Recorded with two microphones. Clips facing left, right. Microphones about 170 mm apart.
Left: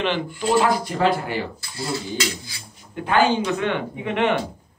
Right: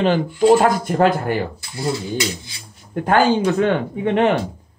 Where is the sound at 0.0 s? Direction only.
45° right (ahead or behind).